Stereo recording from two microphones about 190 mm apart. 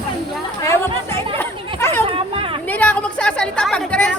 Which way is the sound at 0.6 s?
15° left (ahead or behind).